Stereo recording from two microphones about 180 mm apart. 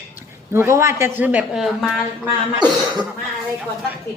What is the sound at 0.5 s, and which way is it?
A woman's voice, 15° right (ahead or behind).